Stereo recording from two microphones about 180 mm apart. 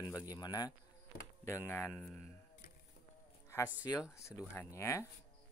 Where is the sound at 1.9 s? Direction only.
5° left (ahead or behind).